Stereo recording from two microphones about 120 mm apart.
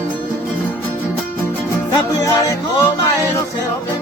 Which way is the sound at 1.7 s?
25° left (ahead or behind).